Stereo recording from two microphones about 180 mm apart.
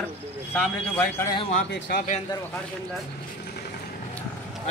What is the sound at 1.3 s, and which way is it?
Speech, 30° left (ahead or behind).